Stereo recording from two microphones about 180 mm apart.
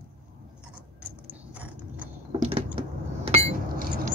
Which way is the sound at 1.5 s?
10° right (ahead or behind).